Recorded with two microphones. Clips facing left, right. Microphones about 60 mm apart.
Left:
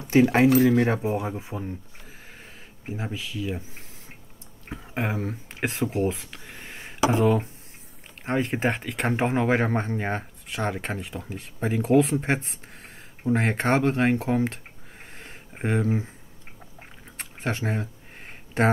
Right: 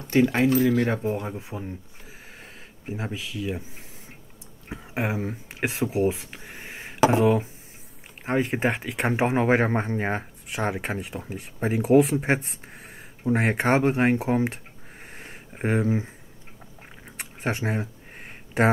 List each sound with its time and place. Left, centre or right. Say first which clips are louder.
0.0 s speech: left 2 dB; centre
0.8 s speech: left 1 dB; centre
2.9 s speech: right 1 dB; centre
4.6 s speech: right 1 dB; centre
15.1 s a sound: right 1 dB; centre
17.2 s a sound: right 1 dB; centre